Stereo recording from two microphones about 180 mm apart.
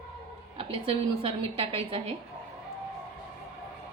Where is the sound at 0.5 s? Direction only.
30° right (ahead or behind).